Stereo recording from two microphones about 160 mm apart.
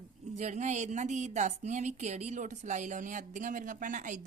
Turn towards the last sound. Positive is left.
turn(degrees=-55)  # may be behind; listen again after turning